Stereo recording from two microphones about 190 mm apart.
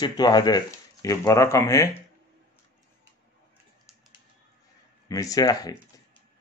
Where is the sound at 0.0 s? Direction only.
20° left (ahead or behind).